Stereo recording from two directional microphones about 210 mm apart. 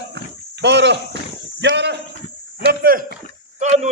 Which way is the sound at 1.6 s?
55° right (ahead or behind).